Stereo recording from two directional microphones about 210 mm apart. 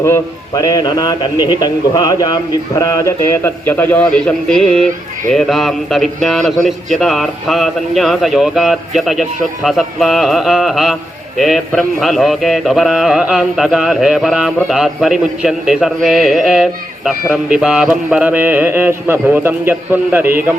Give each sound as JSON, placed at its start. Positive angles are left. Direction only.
{"t": 0.0, "sound": "a man's voice", "side_deg": 15}
{"t": 5.3, "sound": "mantra", "side_deg": 0}
{"t": 18.1, "sound": "a man's voice", "side_deg": -5}